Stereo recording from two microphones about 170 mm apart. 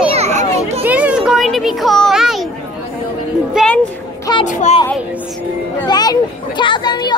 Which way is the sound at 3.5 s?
5° left (ahead or behind).